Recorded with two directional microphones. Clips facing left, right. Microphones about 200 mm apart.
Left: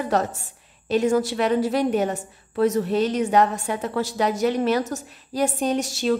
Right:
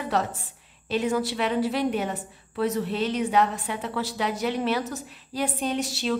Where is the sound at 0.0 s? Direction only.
45° left (ahead or behind).